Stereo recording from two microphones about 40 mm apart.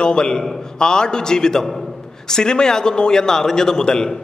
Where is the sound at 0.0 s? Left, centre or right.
Left.